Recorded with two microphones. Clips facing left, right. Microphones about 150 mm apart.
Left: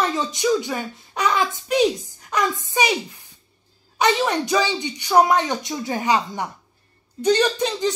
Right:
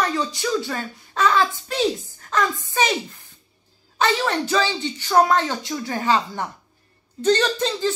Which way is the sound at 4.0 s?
20° left (ahead or behind).